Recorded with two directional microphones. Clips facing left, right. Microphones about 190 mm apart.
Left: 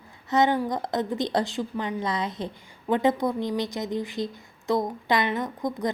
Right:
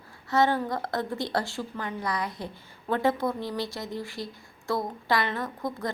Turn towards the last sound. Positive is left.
turn(degrees=20)  # may be behind; listen again after turning